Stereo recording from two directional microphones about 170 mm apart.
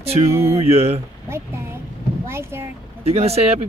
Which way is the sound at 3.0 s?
35° right (ahead or behind).